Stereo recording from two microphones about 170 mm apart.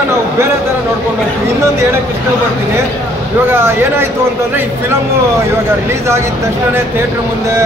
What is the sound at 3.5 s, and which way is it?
Speech, 15° right (ahead or behind).